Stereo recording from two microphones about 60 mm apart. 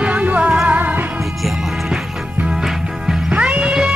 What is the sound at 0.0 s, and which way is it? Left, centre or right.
Music, right.